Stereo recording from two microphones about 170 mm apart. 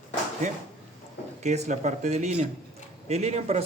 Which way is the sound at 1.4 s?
40° right (ahead or behind).